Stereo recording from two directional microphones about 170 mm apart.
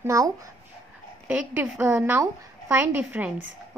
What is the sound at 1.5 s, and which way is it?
Speech, 15° right (ahead or behind).